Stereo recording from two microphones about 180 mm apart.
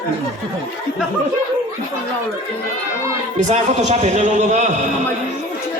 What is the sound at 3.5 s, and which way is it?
A man's voice, 40° right (ahead or behind).